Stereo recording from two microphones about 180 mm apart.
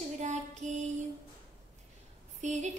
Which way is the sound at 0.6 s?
40° right (ahead or behind).